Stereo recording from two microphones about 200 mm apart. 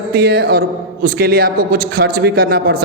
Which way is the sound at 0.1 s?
50° right (ahead or behind).